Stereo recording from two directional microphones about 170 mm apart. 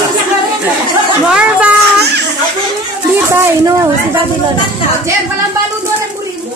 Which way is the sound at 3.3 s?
20° right (ahead or behind).